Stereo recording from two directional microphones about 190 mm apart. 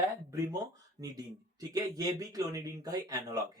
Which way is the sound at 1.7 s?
20° right (ahead or behind).